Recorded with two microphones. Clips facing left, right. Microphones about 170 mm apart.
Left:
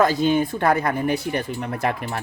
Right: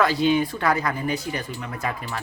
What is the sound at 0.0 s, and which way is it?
Speech, 45° left (ahead or behind).